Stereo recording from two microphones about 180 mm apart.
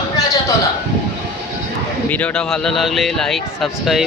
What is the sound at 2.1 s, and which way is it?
Speech, 10° left (ahead or behind).